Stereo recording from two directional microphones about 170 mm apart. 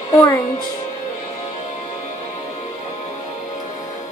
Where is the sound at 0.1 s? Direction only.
20° left (ahead or behind).